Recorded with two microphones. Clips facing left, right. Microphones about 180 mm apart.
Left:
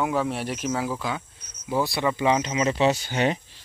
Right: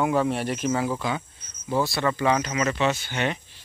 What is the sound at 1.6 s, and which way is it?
Speech, 15° left (ahead or behind).